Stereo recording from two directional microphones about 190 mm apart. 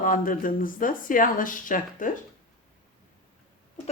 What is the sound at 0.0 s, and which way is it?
Speech, 45° left (ahead or behind).